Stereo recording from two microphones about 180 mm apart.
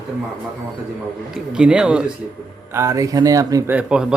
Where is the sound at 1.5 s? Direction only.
5° right (ahead or behind).